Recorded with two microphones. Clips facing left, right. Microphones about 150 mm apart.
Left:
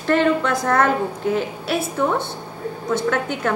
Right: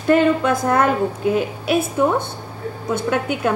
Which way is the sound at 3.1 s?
15° right (ahead or behind).